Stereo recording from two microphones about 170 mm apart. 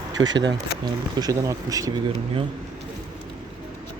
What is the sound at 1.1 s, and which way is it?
Speech, 20° right (ahead or behind).